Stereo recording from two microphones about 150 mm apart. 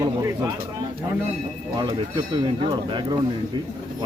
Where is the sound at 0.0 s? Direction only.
25° right (ahead or behind).